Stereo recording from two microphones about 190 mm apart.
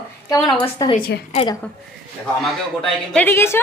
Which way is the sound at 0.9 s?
50° left (ahead or behind).